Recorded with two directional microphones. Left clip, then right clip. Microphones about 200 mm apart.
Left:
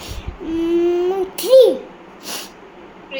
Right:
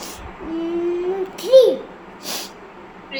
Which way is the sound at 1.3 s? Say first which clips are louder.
Left 1 dB; 55° left (ahead or behind).